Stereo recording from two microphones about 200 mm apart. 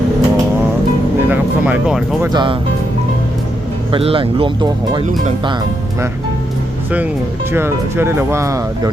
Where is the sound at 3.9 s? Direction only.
25° right (ahead or behind).